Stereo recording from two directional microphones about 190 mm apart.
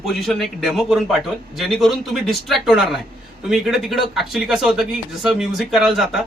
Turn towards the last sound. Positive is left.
turn(degrees=0)  # may be behind; listen again after turning